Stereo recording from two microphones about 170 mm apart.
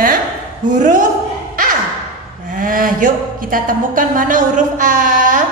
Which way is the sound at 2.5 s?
55° right (ahead or behind).